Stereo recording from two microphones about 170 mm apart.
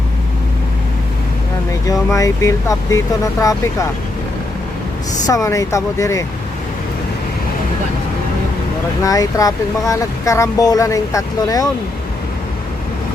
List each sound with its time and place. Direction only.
1.9 s speech: 20° left (ahead or behind)
5.2 s speech: 20° left (ahead or behind)
9.0 s speech: 20° left (ahead or behind)